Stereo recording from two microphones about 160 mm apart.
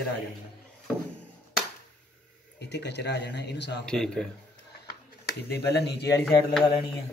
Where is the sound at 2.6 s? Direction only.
90° left.